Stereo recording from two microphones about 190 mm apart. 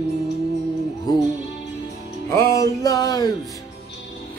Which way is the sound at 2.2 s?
15° left (ahead or behind).